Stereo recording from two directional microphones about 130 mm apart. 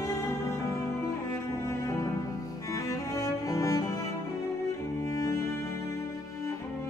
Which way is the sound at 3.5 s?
25° left (ahead or behind).